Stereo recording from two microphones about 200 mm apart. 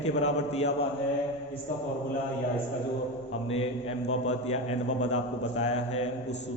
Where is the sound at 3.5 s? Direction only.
30° left (ahead or behind).